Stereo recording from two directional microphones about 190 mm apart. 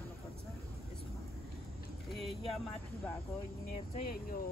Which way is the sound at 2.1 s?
Centre (ahead or behind).